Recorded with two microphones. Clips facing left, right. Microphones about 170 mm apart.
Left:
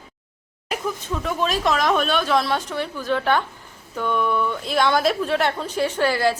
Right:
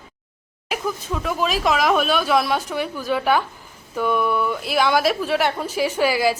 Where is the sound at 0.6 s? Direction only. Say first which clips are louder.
Right 1 dB; 5° right (ahead or behind).